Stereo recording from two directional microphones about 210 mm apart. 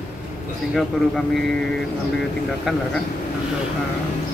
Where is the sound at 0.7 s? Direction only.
Centre (ahead or behind).